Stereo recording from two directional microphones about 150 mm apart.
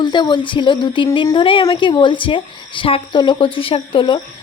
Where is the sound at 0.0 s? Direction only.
30° left (ahead or behind).